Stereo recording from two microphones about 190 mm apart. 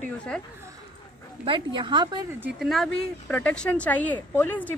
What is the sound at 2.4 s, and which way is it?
Speech, centre (ahead or behind).